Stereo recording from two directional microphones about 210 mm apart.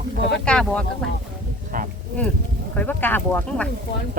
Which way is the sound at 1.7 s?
40° right (ahead or behind).